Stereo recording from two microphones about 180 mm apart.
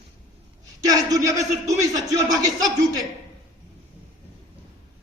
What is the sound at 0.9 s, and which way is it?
A man's voice, 20° right (ahead or behind).